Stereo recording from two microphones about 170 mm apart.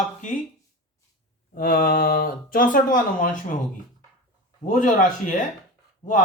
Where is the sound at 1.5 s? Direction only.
55° left (ahead or behind).